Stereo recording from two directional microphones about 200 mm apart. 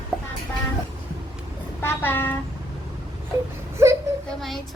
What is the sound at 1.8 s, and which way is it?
Speech, 10° left (ahead or behind).